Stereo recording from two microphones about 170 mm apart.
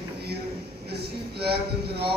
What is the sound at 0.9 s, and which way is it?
Speech, 70° right (ahead or behind).